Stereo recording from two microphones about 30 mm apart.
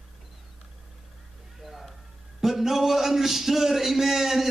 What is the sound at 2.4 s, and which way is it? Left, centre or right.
A man's voice, centre.